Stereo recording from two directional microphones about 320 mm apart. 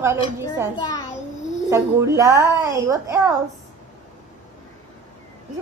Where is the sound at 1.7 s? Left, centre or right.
Centre.